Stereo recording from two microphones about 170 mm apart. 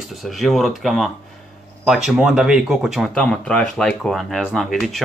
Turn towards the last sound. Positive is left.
turn(degrees=0)  # may be behind; listen again after turning